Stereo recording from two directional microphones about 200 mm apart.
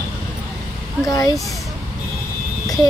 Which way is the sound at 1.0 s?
15° left (ahead or behind).